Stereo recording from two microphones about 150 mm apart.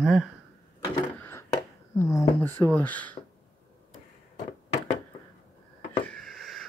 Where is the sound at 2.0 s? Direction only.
20° left (ahead or behind).